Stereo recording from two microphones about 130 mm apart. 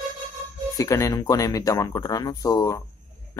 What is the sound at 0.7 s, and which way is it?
Speech, 25° left (ahead or behind).